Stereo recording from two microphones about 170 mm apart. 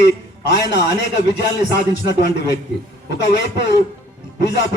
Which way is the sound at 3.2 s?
90° left.